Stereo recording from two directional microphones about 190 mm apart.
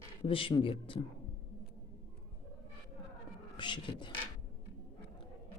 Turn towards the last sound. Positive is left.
turn(degrees=25)  # may be behind; listen again after turning